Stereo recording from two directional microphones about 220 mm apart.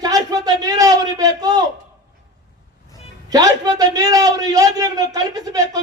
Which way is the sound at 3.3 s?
15° right (ahead or behind).